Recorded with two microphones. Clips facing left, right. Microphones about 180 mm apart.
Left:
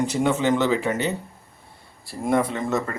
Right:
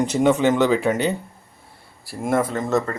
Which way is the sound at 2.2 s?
Centre (ahead or behind).